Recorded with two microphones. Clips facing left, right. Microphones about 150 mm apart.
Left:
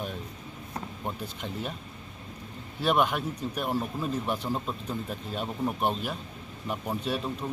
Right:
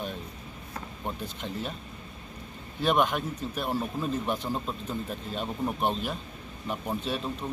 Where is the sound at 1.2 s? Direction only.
10° left (ahead or behind).